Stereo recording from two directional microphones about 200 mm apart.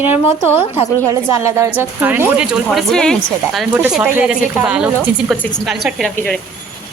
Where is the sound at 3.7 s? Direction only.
10° right (ahead or behind).